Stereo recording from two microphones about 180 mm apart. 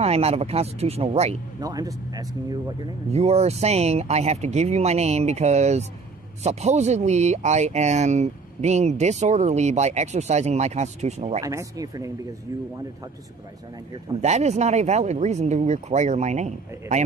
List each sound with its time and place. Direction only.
0.0 s speech: 35° right (ahead or behind)
1.6 s speech: 20° right (ahead or behind)
3.1 s speech: 35° right (ahead or behind)
11.4 s speech: 20° right (ahead or behind)
14.2 s speech: 40° right (ahead or behind)